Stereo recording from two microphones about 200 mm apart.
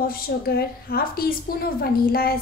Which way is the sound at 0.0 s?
50° left (ahead or behind).